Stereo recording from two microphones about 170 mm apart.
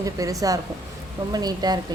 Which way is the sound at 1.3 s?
25° right (ahead or behind).